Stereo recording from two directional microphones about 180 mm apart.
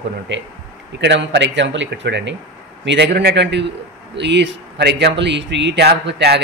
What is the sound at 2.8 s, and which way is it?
Speech, 70° right (ahead or behind).